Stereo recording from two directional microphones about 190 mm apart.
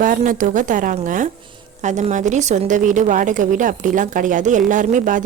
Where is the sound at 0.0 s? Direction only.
45° right (ahead or behind).